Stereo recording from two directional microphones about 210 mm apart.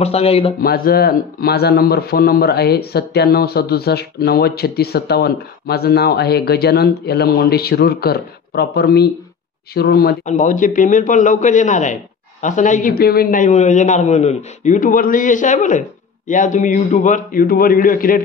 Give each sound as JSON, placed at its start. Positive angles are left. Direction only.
{"t": 0.0, "sound": "speech", "side_deg": 30}
{"t": 0.6, "sound": "speech", "side_deg": 45}
{"t": 10.2, "sound": "a man's voice", "side_deg": 35}